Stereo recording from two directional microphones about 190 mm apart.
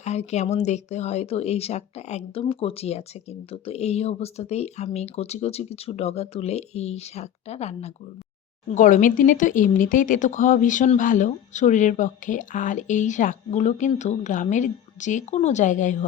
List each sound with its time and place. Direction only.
0.0 s speech: 35° left (ahead or behind)